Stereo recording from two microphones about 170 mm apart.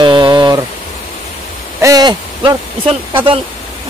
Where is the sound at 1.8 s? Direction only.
20° right (ahead or behind).